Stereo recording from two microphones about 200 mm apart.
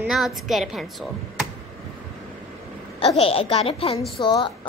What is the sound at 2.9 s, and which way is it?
A woman's voice, 30° left (ahead or behind).